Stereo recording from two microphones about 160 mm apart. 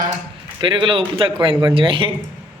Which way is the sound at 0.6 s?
30° right (ahead or behind).